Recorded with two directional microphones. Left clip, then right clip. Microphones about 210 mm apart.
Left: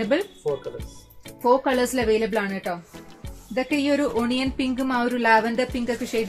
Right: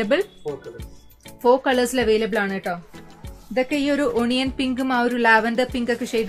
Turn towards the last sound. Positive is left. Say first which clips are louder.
# right 3 dB
turn(degrees=-40)  # may be behind; listen again after turning